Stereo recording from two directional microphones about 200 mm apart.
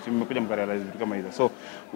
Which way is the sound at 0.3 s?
15° left (ahead or behind).